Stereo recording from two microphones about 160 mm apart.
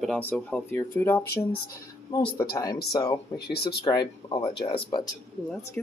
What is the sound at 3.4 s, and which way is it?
Speech, 85° left.